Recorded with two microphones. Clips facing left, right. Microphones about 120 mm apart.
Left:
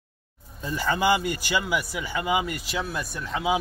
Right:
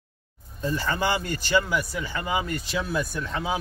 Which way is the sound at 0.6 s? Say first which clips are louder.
Left 1 dB; 15° left (ahead or behind).